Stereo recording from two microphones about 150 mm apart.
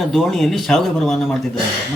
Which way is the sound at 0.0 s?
Centre (ahead or behind).